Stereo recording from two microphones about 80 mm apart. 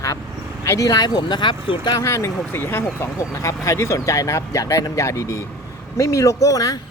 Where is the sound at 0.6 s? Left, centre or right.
Left.